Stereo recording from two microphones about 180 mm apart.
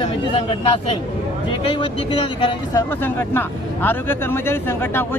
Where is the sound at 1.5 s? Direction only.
30° left (ahead or behind).